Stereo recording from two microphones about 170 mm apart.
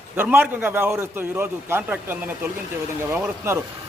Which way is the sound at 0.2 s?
10° right (ahead or behind).